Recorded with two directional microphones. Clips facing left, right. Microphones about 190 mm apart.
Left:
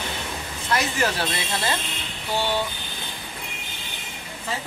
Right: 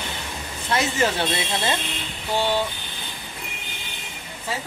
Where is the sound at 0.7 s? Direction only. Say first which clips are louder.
Right 2 dB; 25° right (ahead or behind).